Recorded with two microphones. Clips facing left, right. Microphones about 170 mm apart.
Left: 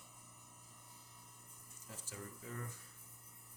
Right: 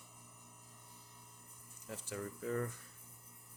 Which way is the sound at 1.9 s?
65° right (ahead or behind).